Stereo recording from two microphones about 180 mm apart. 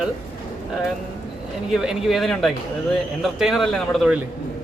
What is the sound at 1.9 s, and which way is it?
Speech, centre (ahead or behind).